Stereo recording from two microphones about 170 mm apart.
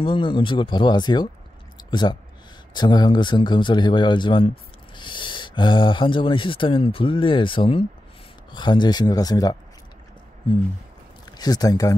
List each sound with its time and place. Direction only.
0.0 s speech: 30° left (ahead or behind)
1.8 s clicking: 25° left (ahead or behind)
2.7 s speech: 25° left (ahead or behind)
11.3 s speech: 20° left (ahead or behind)